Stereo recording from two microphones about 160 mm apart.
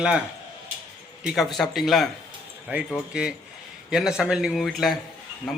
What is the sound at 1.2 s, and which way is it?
Speech, centre (ahead or behind).